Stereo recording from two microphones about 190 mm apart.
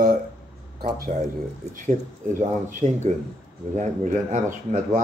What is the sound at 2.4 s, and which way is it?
Speech, 40° right (ahead or behind).